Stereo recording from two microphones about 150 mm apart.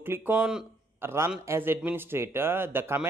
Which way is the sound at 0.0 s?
15° right (ahead or behind).